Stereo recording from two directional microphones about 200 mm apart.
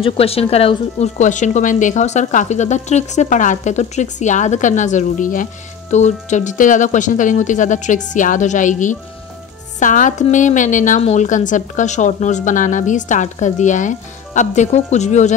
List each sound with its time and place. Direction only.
0.0 s speech: 30° left (ahead or behind)